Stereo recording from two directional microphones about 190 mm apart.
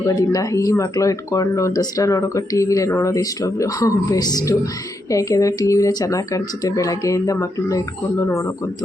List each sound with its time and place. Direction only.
0.0 s speech: 20° left (ahead or behind)